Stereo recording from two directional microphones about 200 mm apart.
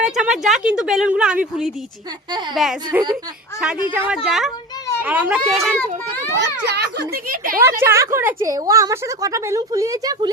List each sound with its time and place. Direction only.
0.0 s speech: 5° right (ahead or behind)
6.7 s a woman's voice: 55° right (ahead or behind)
7.6 s a woman's voice: 10° right (ahead or behind)